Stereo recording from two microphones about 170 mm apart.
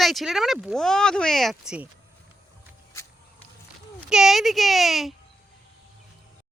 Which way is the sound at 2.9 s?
15° left (ahead or behind).